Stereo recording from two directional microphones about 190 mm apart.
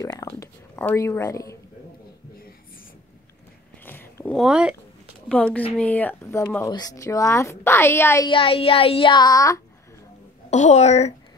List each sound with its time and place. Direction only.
0.0 s a woman's voice: 15° left (ahead or behind)
3.8 s a sound: 10° left (ahead or behind)
4.5 s a woman's voice: 5° right (ahead or behind); by 8.3 s 15° left (ahead or behind)
8.3 s speech: 30° left (ahead or behind)
10.5 s a woman's voice: 35° left (ahead or behind)